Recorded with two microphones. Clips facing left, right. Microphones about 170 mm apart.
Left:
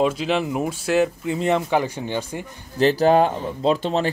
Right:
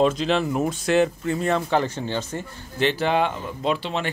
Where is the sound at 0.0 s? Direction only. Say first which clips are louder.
Even; 10° left (ahead or behind).